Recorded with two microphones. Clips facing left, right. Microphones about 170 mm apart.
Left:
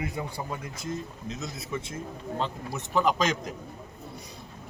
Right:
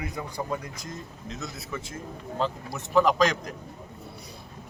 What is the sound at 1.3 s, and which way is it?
Speech, 20° left (ahead or behind).